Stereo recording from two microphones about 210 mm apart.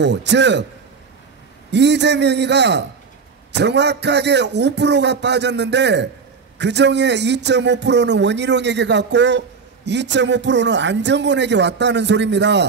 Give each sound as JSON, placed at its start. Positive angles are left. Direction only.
{"t": 0.0, "sound": "a man's voice", "side_deg": -55}
{"t": 1.7, "sound": "a man's voice", "side_deg": -55}